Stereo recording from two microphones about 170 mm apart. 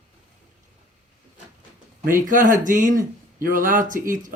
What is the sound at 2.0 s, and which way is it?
Speech, 55° right (ahead or behind).